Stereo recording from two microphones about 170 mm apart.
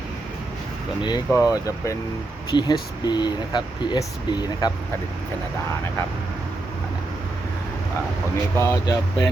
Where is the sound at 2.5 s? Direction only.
25° left (ahead or behind).